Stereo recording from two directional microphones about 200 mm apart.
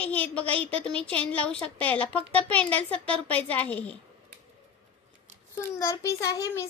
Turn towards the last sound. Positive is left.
turn(degrees=15)  # may be behind; listen again after turning